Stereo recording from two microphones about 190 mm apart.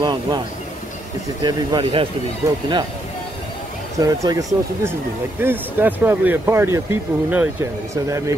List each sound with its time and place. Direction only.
0.0 s speech: 25° right (ahead or behind)
1.4 s speech: 20° right (ahead or behind)
4.0 s speech: 20° right (ahead or behind)